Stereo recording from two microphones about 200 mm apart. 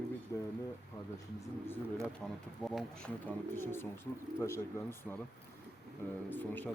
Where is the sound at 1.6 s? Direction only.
10° left (ahead or behind).